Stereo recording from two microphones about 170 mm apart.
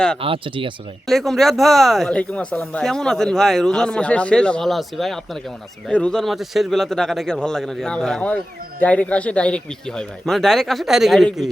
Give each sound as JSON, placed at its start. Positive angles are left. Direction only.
{"t": 0.2, "sound": "speech", "side_deg": -30}
{"t": 1.0, "sound": "speech", "side_deg": 0}